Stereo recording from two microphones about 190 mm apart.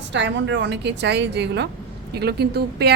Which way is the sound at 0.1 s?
70° right (ahead or behind).